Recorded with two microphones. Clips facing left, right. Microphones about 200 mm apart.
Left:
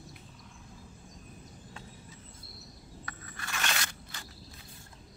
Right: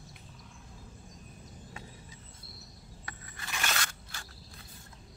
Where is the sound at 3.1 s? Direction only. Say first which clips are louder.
Left 1 dB; 20° right (ahead or behind).